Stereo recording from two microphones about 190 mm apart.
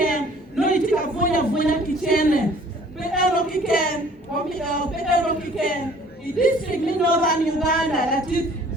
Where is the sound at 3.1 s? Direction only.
50° left (ahead or behind).